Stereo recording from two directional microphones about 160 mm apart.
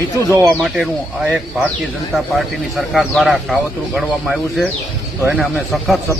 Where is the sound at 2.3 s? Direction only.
Centre (ahead or behind).